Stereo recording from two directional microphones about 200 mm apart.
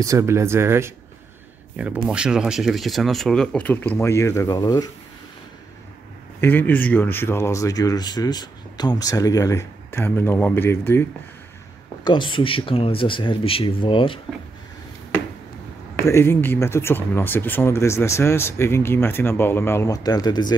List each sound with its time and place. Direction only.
0.0 s speech: 15° right (ahead or behind)
2.0 s speech: 5° right (ahead or behind); by 4.8 s 20° left (ahead or behind)
6.4 s speech: 10° left (ahead or behind)
12.0 s speech: 25° left (ahead or behind)
16.1 s speech: 10° left (ahead or behind)